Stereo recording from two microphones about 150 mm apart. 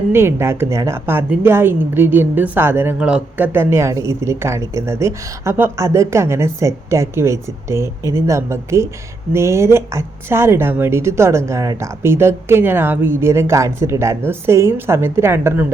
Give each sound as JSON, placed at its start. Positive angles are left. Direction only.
{"t": 0.1, "sound": "a woman's voice", "side_deg": -15}